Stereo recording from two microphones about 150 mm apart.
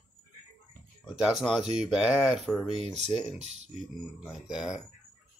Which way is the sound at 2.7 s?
45° right (ahead or behind).